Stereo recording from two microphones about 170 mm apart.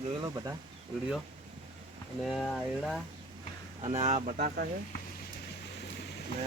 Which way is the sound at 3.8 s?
40° right (ahead or behind).